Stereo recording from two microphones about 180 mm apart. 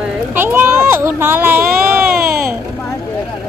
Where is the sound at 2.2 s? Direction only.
55° right (ahead or behind).